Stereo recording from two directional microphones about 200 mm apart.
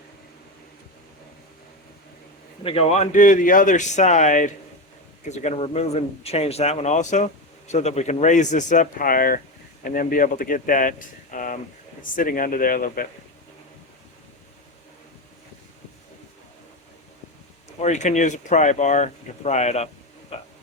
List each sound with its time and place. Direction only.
2.6 s speech: 30° left (ahead or behind)
17.7 s speech: 35° left (ahead or behind)
20.3 s a sound: 30° left (ahead or behind)